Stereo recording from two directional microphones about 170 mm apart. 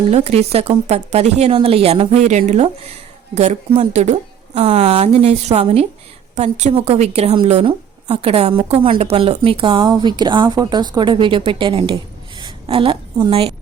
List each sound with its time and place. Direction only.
0.1 s a woman's voice: 40° right (ahead or behind)